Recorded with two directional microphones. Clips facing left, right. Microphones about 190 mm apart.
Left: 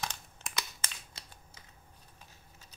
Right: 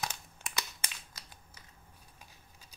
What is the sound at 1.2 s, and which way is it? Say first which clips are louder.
Typing: left 1 dB; 25° left (ahead or behind).